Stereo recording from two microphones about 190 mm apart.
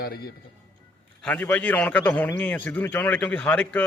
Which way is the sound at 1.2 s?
10° left (ahead or behind).